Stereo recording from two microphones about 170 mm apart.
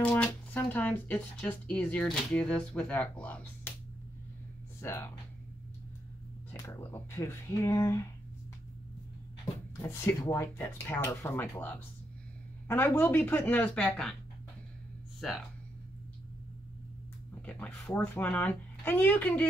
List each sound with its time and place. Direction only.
0.0 s speech: 10° left (ahead or behind)
4.7 s speech: 15° left (ahead or behind)
6.6 s speech: 15° left (ahead or behind)
9.8 s speech: 15° left (ahead or behind)
15.1 s speech: centre (ahead or behind)
17.5 s speech: 10° left (ahead or behind)